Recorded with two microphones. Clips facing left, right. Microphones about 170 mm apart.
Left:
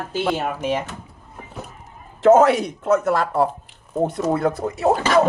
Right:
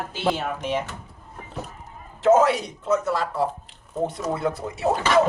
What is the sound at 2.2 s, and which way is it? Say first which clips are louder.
Speech: left 4 dB; 55° left (ahead or behind).